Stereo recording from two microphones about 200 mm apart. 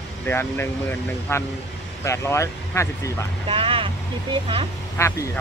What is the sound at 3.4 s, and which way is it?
Speech, 25° right (ahead or behind).